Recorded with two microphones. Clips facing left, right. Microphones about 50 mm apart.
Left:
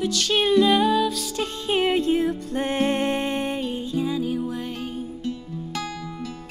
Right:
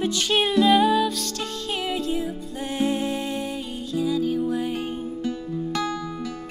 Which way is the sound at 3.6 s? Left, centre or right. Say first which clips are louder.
Even; left.